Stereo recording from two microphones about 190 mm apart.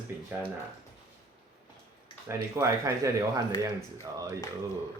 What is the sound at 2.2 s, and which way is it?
Speech, 15° right (ahead or behind).